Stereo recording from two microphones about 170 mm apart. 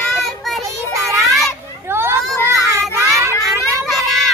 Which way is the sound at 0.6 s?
15° right (ahead or behind).